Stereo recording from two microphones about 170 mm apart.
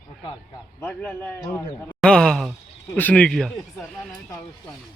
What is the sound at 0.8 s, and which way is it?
A man's voice, 10° left (ahead or behind).